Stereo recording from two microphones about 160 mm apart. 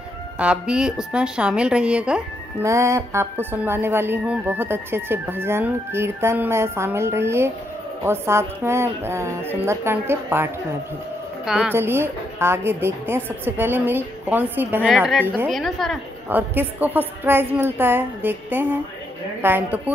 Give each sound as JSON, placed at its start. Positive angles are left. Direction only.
{"t": 0.4, "sound": "a woman's voice", "side_deg": -5}
{"t": 2.6, "sound": "speech", "side_deg": -20}
{"t": 11.4, "sound": "a woman's voice", "side_deg": -5}
{"t": 11.7, "sound": "a woman's voice", "side_deg": -15}
{"t": 15.5, "sound": "a woman's voice", "side_deg": 0}
{"t": 16.3, "sound": "speech", "side_deg": -10}